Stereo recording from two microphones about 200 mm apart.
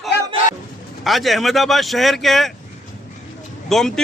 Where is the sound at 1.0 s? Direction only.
Centre (ahead or behind).